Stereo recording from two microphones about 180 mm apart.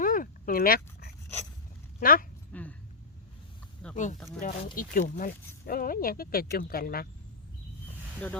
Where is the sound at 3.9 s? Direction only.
45° left (ahead or behind).